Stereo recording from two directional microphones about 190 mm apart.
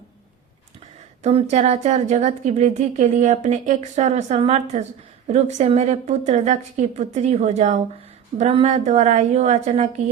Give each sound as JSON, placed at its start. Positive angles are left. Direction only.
{"t": 1.2, "sound": "a woman's voice", "side_deg": -35}